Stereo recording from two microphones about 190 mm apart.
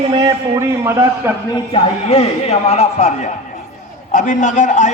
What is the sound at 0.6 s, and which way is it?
Speech, 15° right (ahead or behind).